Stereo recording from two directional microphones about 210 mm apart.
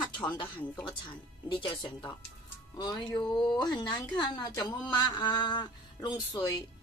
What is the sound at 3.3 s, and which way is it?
A woman's voice, 20° left (ahead or behind).